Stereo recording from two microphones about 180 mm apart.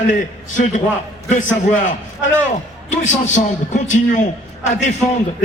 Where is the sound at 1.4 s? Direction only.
45° left (ahead or behind).